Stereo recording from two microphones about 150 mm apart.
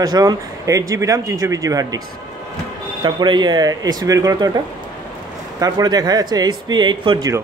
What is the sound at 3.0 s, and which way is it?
A man's voice, 30° right (ahead or behind).